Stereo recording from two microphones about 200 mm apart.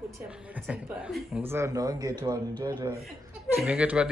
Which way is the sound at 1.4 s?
15° right (ahead or behind).